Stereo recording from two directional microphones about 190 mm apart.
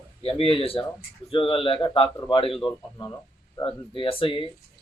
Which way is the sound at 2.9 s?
15° left (ahead or behind).